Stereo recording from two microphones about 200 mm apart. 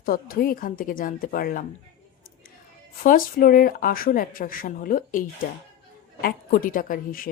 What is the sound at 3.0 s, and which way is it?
A woman's voice, 45° left (ahead or behind).